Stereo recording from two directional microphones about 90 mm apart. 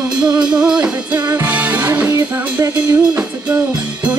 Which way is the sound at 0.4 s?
10° right (ahead or behind).